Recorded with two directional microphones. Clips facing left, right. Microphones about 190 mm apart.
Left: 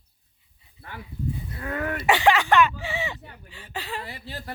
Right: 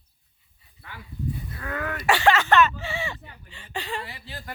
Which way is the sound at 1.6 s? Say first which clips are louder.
Left 4 dB; 25° left (ahead or behind).